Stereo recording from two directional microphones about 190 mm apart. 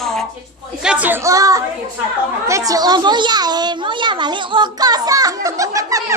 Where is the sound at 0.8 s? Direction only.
10° right (ahead or behind).